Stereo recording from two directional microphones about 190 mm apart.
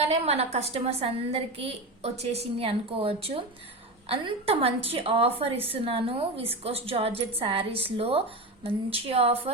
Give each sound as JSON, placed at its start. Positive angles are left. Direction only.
{"t": 0.0, "sound": "a woman's voice", "side_deg": -35}